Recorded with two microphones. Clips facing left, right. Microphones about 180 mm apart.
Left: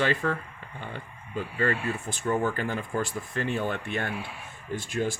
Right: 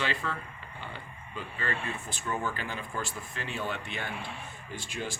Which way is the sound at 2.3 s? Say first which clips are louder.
Left 7 dB; 45° left (ahead or behind).